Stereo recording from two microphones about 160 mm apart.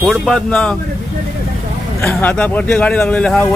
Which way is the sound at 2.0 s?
10° left (ahead or behind).